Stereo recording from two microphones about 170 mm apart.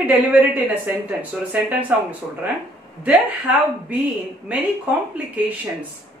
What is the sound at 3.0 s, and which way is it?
Speech, 10° right (ahead or behind).